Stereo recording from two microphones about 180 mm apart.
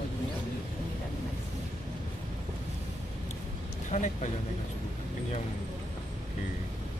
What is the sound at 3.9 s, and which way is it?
Speech, 40° left (ahead or behind).